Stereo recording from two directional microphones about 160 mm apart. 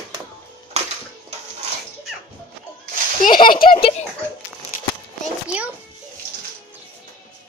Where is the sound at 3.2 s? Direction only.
60° left (ahead or behind).